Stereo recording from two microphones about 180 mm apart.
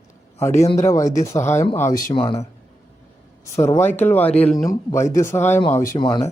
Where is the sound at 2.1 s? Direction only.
30° left (ahead or behind).